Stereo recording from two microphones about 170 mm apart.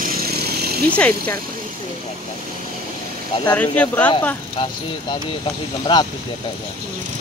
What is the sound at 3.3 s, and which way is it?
Speech, 20° left (ahead or behind).